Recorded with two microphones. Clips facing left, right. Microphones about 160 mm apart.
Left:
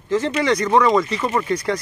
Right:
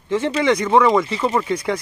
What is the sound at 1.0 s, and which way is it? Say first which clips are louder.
Speech: right 2 dB; 20° right (ahead or behind).